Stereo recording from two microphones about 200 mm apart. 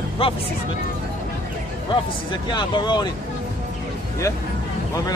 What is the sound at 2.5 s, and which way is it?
Speech, 20° left (ahead or behind).